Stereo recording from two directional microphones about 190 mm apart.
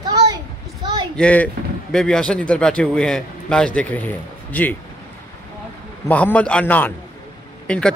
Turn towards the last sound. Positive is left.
turn(degrees=5)  # may be behind; listen again after turning